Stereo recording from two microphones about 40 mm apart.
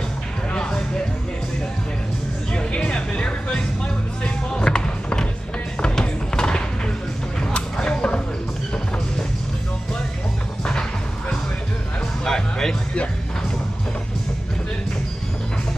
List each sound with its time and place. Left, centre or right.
0.5 s music: left
2.9 s music: left
5.9 s clip-clop: centre
7.3 s a sound: centre
10.6 s music: centre